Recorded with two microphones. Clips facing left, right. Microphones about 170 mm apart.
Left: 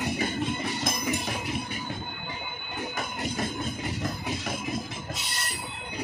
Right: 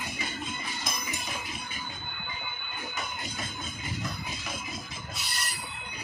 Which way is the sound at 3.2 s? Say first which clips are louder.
Left 8 dB; 60° left (ahead or behind).